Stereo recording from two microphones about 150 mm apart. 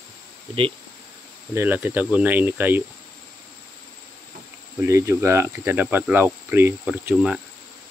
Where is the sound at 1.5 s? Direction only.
15° right (ahead or behind).